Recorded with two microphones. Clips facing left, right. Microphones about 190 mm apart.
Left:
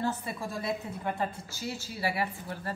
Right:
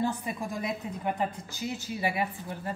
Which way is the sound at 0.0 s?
15° right (ahead or behind).